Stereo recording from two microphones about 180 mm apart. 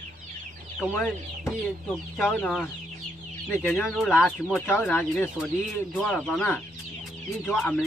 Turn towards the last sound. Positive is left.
turn(degrees=10)  # may be behind; listen again after turning